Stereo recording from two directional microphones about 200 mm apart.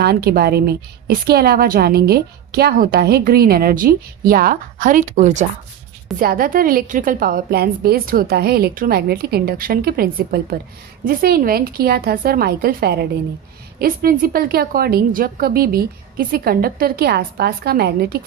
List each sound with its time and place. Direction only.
0.0 s a woman's voice: 50° right (ahead or behind)